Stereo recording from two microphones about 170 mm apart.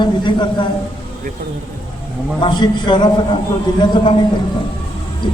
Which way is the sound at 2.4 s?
25° left (ahead or behind).